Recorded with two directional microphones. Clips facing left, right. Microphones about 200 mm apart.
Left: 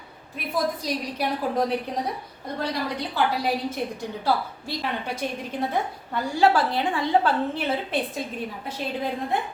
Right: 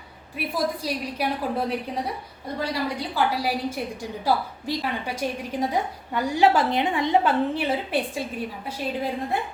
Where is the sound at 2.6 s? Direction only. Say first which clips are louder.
Right 1 dB; 10° right (ahead or behind).